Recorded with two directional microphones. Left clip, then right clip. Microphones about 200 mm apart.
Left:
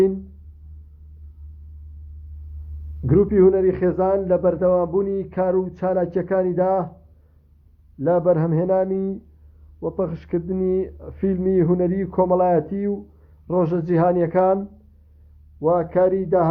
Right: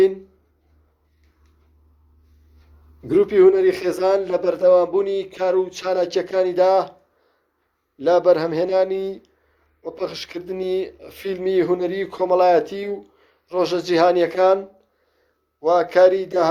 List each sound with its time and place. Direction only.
3.2 s a man's voice: 40° right (ahead or behind)
8.0 s a man's voice: 35° right (ahead or behind)
15.6 s a man's voice: 35° right (ahead or behind)